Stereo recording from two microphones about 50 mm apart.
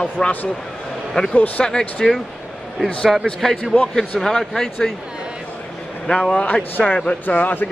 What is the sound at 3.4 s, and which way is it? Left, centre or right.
Speech, centre.